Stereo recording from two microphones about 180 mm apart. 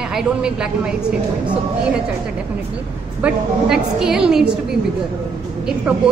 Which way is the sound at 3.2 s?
5° right (ahead or behind).